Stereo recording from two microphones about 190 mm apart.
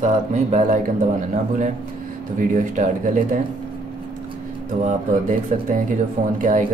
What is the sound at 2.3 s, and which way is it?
Speech, 45° right (ahead or behind).